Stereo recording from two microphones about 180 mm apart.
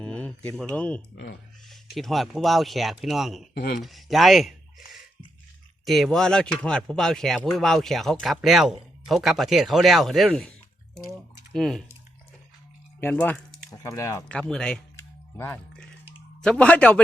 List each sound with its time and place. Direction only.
0.0 s a sound: 5° left (ahead or behind)
0.6 s speech: 5° left (ahead or behind)
1.1 s speech: 65° left (ahead or behind)
1.6 s speech: centre (ahead or behind)
3.5 s speech: 60° left (ahead or behind)
3.8 s speech: centre (ahead or behind)
11.5 s speech: centre (ahead or behind)
13.0 s speech: 10° left (ahead or behind)
13.7 s speech: 20° left (ahead or behind)
14.3 s speech: 5° left (ahead or behind)
14.9 s a sound: 15° left (ahead or behind)